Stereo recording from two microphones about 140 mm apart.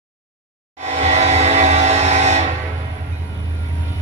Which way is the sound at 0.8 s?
55° right (ahead or behind).